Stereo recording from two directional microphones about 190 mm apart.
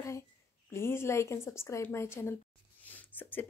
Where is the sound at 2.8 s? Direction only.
10° left (ahead or behind).